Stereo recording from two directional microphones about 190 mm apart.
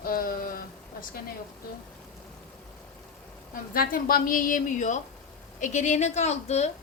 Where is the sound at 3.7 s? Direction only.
50° left (ahead or behind).